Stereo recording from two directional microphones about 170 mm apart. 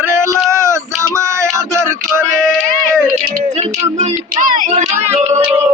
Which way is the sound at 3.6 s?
45° right (ahead or behind).